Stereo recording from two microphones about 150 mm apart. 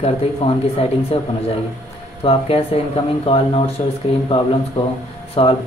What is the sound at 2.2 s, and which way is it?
Speech, 40° left (ahead or behind).